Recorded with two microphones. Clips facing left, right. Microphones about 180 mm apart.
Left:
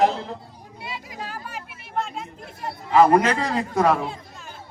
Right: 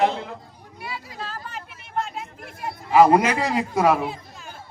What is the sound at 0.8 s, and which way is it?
Vehicle, 20° left (ahead or behind).